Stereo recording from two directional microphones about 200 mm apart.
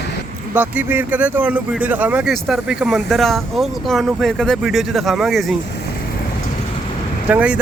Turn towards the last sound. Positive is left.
turn(degrees=-5)  # may be behind; listen again after turning